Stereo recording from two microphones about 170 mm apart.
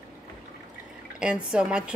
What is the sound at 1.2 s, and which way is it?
Speech, 5° right (ahead or behind).